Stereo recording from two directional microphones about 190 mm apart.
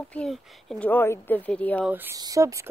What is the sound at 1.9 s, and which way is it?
Speech, 10° right (ahead or behind).